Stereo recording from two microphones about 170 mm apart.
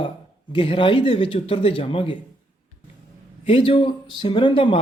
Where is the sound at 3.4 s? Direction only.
30° left (ahead or behind).